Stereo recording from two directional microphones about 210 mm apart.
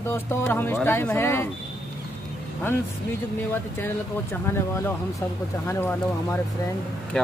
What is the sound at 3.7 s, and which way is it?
A man's voice, 10° left (ahead or behind).